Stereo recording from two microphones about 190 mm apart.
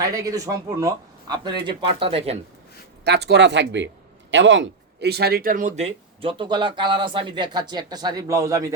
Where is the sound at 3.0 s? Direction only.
60° right (ahead or behind).